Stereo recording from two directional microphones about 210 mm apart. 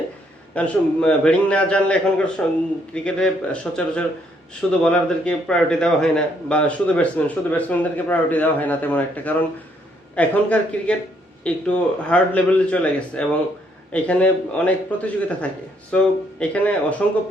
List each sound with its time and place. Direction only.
0.5 s a man's voice: 5° left (ahead or behind)